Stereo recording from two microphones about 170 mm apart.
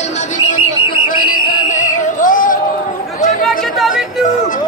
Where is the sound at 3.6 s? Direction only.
Centre (ahead or behind).